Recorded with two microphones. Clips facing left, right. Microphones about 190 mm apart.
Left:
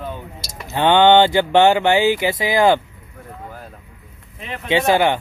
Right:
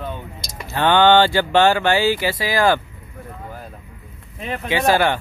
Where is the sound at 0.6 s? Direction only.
20° left (ahead or behind).